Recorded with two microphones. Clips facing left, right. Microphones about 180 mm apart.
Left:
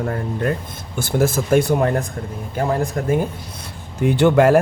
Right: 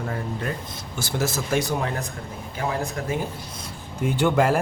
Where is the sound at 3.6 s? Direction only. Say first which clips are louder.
Left 7 dB; 70° left (ahead or behind).